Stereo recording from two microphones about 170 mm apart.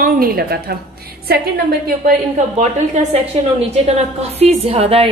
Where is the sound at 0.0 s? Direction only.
60° right (ahead or behind).